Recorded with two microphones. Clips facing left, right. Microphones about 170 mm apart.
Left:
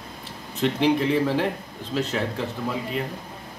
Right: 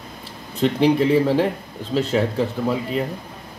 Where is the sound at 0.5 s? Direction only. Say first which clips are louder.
Right 4 dB; 35° right (ahead or behind).